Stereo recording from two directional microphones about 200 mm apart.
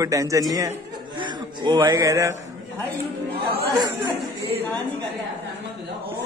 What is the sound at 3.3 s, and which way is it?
Chatter, 50° right (ahead or behind).